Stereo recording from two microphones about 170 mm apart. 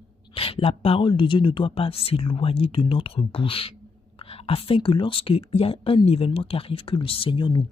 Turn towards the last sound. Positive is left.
turn(degrees=30)  # may be behind; listen again after turning